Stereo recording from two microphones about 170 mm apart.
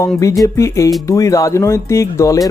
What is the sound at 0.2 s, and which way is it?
Speech, 20° left (ahead or behind).